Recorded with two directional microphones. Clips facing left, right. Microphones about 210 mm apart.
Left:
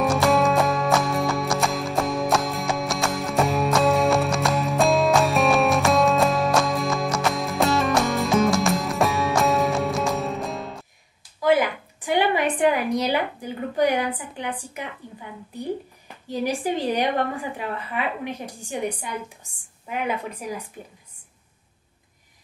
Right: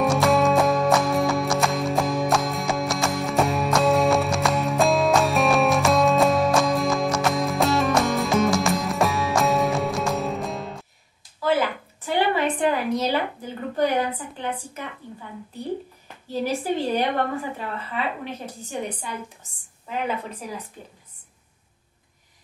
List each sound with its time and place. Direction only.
0.0 s music: centre (ahead or behind)
11.4 s a sound: 15° left (ahead or behind)
16.3 s a woman's voice: 15° left (ahead or behind)
19.9 s a woman's voice: 10° left (ahead or behind)